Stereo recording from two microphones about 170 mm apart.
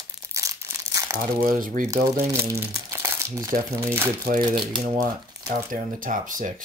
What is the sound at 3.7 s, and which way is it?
Speech, 15° right (ahead or behind).